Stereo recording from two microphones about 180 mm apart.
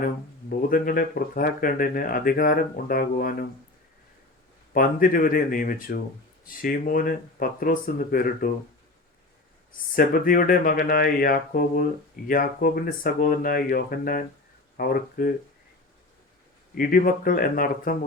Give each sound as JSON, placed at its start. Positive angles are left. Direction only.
{"t": 0.7, "sound": "speech", "side_deg": 55}
{"t": 4.7, "sound": "speech", "side_deg": 55}
{"t": 9.9, "sound": "speech", "side_deg": 50}
{"t": 16.7, "sound": "speech", "side_deg": 50}